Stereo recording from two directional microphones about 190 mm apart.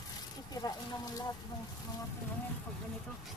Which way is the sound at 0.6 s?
25° left (ahead or behind).